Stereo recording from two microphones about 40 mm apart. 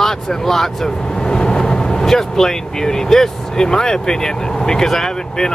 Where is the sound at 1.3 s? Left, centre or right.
Left.